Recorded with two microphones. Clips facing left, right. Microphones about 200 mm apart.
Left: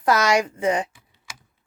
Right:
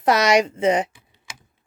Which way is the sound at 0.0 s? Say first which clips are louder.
Right 2 dB; 20° right (ahead or behind).